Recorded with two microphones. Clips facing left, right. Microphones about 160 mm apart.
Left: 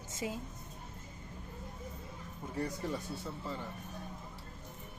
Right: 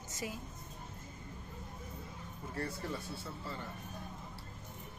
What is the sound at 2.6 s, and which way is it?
Speech, 15° left (ahead or behind).